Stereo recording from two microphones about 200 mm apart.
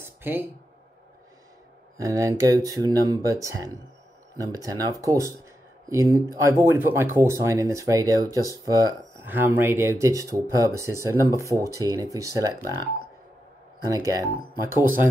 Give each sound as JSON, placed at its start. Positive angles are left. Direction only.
{"t": 0.0, "sound": "a sound", "side_deg": -10}
{"t": 2.0, "sound": "speech", "side_deg": -15}
{"t": 13.8, "sound": "speech", "side_deg": -15}